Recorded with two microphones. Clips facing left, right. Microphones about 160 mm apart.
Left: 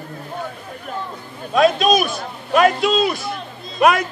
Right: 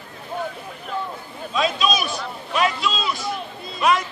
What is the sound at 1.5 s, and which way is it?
A man's voice, 50° left (ahead or behind).